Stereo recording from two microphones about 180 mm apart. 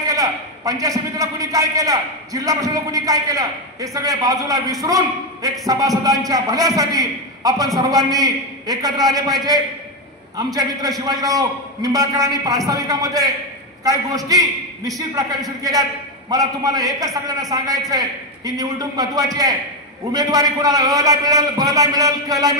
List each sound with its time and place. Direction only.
0.1 s a man's voice: 20° right (ahead or behind)
16.3 s a man's voice: 20° right (ahead or behind)